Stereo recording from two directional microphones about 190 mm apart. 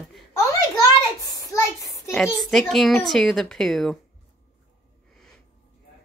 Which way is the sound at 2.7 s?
Centre (ahead or behind).